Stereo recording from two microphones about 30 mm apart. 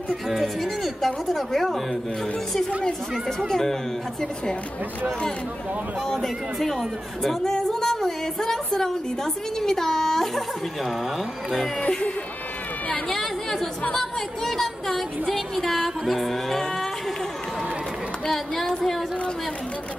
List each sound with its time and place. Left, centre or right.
0.1 s speech: centre
2.8 s speech: centre
6.1 s speech: centre
7.8 s music: centre
8.7 s speech: centre
13.1 s a woman's voice: centre
16.1 s music: centre
18.7 s a sound: centre